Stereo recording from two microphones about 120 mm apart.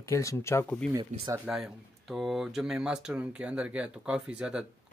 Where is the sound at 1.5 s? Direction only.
5° right (ahead or behind).